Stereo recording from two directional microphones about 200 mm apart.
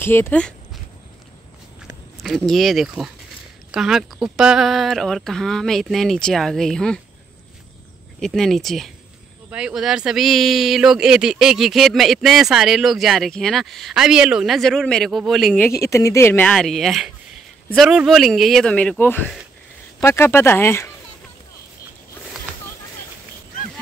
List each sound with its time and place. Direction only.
0.0 s speech: 10° left (ahead or behind)
2.2 s speech: centre (ahead or behind)
8.2 s speech: centre (ahead or behind)
15.8 s speech: 15° left (ahead or behind)